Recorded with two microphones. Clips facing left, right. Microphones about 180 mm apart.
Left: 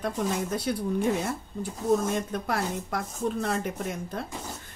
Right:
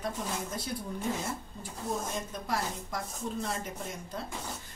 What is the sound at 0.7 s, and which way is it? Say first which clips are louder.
Speech: left 9 dB; 75° left (ahead or behind).